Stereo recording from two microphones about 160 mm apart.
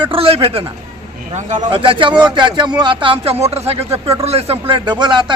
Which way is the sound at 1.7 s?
35° right (ahead or behind).